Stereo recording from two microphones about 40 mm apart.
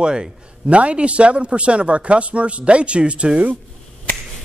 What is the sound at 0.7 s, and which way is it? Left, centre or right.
Speech, right.